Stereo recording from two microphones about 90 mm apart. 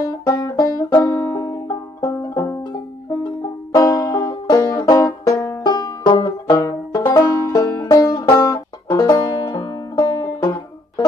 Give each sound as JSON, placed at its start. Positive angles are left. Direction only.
{"t": 0.0, "sound": "banjo", "side_deg": 45}
{"t": 1.0, "sound": "music", "side_deg": 40}
{"t": 3.7, "sound": "music", "side_deg": 40}
{"t": 4.7, "sound": "banjo", "side_deg": 40}
{"t": 5.6, "sound": "banjo", "side_deg": 50}
{"t": 7.2, "sound": "banjo", "side_deg": 35}
{"t": 8.3, "sound": "music", "side_deg": 35}
{"t": 8.5, "sound": "music", "side_deg": 50}